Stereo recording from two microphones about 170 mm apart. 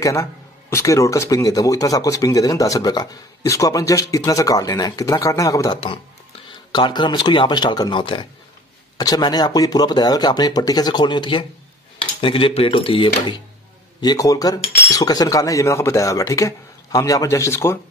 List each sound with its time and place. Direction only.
0.0 s speech: 15° left (ahead or behind)